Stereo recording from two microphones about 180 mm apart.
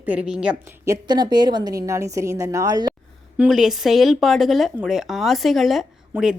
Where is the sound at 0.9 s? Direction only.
25° right (ahead or behind).